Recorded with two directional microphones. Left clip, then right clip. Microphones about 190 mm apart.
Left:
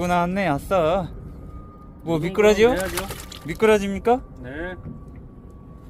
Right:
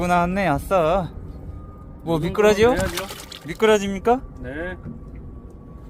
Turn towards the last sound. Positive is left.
turn(degrees=0)  # may be behind; listen again after turning